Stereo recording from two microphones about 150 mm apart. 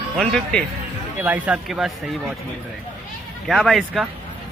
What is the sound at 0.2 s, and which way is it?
Speech, 5° left (ahead or behind).